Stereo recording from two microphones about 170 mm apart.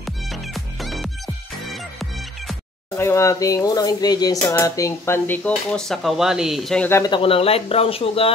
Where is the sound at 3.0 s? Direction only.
15° left (ahead or behind).